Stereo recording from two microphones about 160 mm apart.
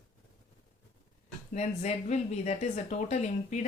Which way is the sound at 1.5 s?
45° left (ahead or behind).